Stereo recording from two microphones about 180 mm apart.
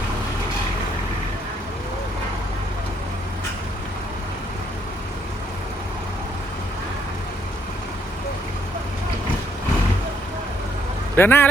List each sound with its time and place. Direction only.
11.2 s speech: 10° left (ahead or behind)